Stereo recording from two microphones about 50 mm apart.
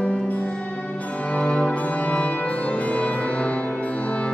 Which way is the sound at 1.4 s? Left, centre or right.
Left.